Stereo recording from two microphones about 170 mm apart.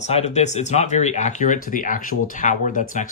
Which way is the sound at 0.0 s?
40° left (ahead or behind).